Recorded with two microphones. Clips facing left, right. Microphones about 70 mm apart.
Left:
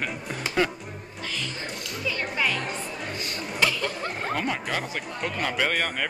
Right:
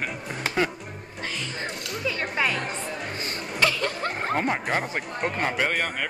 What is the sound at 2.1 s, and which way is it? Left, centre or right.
Speech, right.